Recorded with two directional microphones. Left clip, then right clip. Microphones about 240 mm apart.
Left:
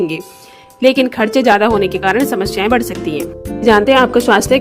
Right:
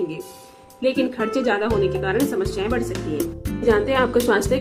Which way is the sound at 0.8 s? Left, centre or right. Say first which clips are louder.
Left 10 dB; left.